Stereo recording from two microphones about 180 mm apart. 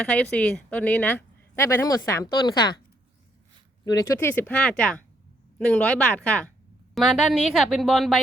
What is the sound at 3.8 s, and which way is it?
A woman's voice, 15° left (ahead or behind).